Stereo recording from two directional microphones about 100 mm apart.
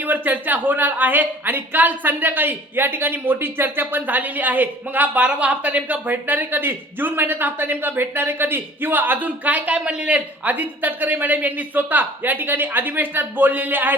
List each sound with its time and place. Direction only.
0.0 s speech: 20° right (ahead or behind)